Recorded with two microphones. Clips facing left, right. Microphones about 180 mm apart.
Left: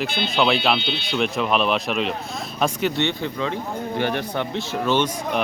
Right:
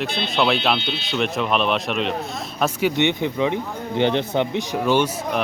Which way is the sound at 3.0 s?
15° right (ahead or behind).